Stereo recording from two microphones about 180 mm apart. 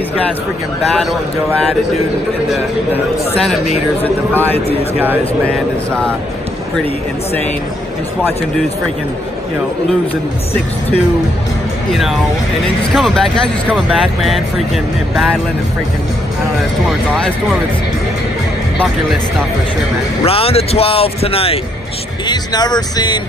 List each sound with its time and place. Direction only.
4.0 s speech: 10° left (ahead or behind)
11.9 s speech: centre (ahead or behind)
16.8 s speech: centre (ahead or behind)
20.2 s speech: 30° left (ahead or behind)